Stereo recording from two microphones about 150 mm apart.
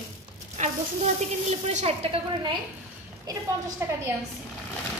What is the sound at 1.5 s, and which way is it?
Speech, 50° right (ahead or behind).